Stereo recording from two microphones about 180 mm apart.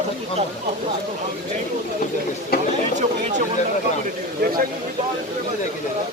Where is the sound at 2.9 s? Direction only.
45° right (ahead or behind).